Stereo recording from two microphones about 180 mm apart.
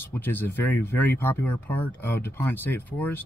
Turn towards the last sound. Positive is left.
turn(degrees=10)  # may be behind; listen again after turning